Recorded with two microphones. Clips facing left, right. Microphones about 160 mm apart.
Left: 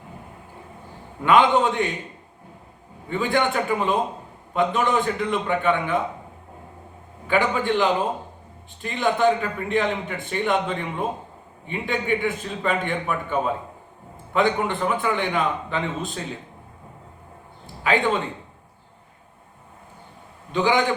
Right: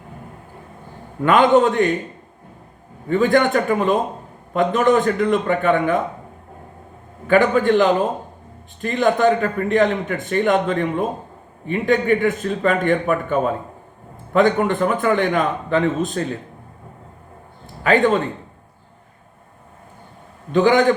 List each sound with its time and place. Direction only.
1.2 s a man's voice: 50° right (ahead or behind)
3.1 s a man's voice: 50° right (ahead or behind)
7.3 s a man's voice: 50° right (ahead or behind)
17.8 s a man's voice: 50° right (ahead or behind)
20.5 s a man's voice: 50° right (ahead or behind)